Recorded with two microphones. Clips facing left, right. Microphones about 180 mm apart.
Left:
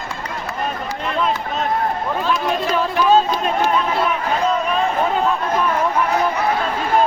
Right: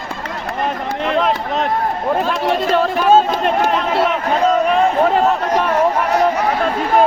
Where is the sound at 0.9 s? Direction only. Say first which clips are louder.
Right 5 dB; 70° right (ahead or behind).